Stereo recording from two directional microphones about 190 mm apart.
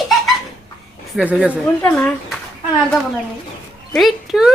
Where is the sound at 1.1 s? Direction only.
5° right (ahead or behind).